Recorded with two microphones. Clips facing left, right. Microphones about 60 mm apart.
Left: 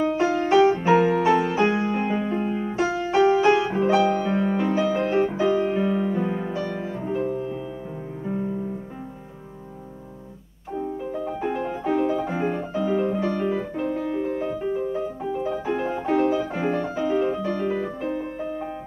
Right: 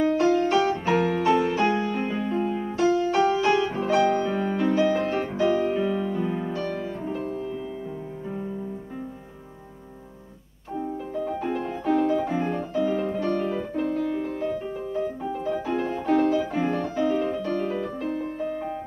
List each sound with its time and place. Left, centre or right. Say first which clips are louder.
0.0 s music: right 1 dB; centre
11.2 s music: left 1 dB; centre
13.7 s music: even; left